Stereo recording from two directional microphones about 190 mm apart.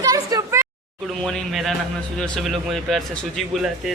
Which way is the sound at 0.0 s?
20° right (ahead or behind).